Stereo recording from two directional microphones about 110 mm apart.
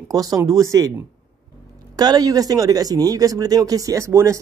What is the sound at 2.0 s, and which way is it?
Speech, 35° right (ahead or behind).